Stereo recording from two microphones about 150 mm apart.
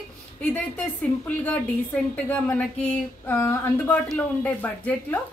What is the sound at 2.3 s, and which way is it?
A woman's voice, 10° left (ahead or behind).